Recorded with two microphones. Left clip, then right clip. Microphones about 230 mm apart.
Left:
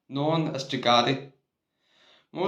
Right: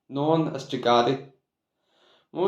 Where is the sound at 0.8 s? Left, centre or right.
Left.